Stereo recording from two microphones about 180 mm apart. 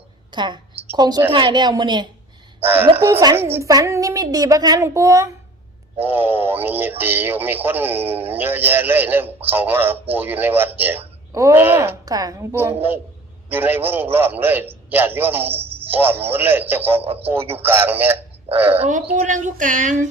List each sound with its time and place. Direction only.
0.3 s a woman's voice: 25° right (ahead or behind)
17.0 s a man's voice: 35° right (ahead or behind)
17.2 s a man's voice: 10° right (ahead or behind)
18.8 s speech: 45° right (ahead or behind)